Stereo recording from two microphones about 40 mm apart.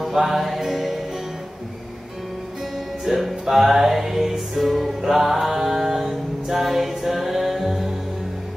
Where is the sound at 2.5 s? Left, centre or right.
Centre.